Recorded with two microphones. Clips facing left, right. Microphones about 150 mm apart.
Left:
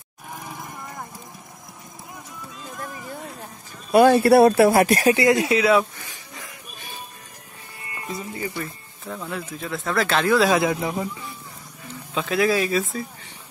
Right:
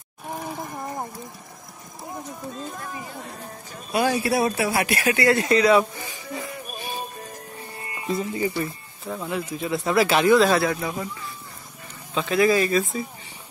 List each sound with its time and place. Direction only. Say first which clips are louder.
2.1 s run: right 8 dB; 40° right (ahead or behind)
3.9 s speech: left 8 dB; 55° left (ahead or behind); by 5.1 s 40° left (ahead or behind)
5.1 s speech: left 1 dB; 15° left (ahead or behind)
7.8 s music: right 5 dB; 25° right (ahead or behind)
8.5 s speech: right 4 dB; 10° right (ahead or behind)
10.5 s speech: left 1 dB; 15° left (ahead or behind)
12.1 s speech: right 1 dB; centre (ahead or behind)